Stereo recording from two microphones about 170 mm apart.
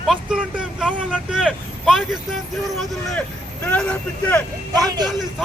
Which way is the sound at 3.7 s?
10° left (ahead or behind).